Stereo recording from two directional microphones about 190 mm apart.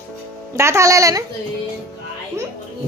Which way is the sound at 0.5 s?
15° right (ahead or behind).